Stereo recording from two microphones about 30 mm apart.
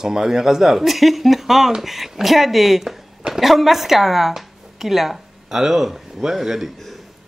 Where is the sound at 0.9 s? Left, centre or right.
Centre.